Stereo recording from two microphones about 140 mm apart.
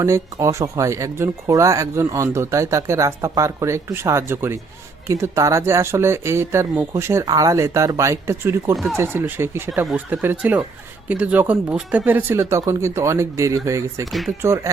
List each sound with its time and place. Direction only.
0.0 s speech: 20° right (ahead or behind)
8.7 s speech: centre (ahead or behind)
9.0 s speech: 15° right (ahead or behind)
14.1 s speech: centre (ahead or behind)
14.4 s speech: 20° right (ahead or behind)